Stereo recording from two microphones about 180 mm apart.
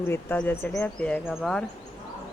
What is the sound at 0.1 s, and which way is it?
Speech, 10° left (ahead or behind).